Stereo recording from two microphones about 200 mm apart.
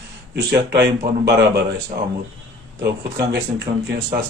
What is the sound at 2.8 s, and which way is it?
Speech, 55° right (ahead or behind).